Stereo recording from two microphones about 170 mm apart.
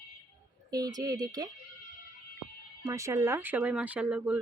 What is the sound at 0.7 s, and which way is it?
Speech, 20° right (ahead or behind).